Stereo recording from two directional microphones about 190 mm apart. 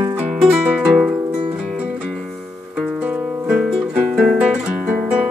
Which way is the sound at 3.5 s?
5° right (ahead or behind).